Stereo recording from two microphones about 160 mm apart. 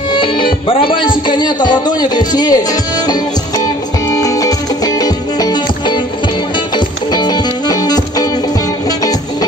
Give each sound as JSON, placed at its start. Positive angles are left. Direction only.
{"t": 0.1, "sound": "music", "side_deg": 30}
{"t": 0.7, "sound": "speech", "side_deg": 30}
{"t": 4.1, "sound": "music", "side_deg": 20}
{"t": 7.1, "sound": "music", "side_deg": 25}